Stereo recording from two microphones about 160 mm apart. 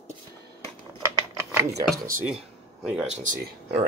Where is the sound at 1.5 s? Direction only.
20° right (ahead or behind).